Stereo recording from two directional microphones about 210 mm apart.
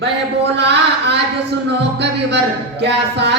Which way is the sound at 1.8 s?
55° right (ahead or behind).